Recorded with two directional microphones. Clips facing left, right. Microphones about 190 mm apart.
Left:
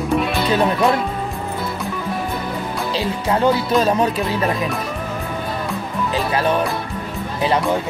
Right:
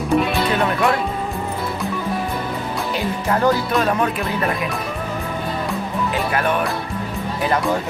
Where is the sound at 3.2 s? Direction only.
20° left (ahead or behind).